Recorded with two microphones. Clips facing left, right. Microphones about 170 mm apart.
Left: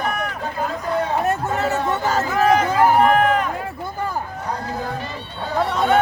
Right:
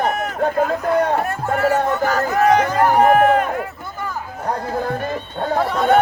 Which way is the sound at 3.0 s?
45° right (ahead or behind).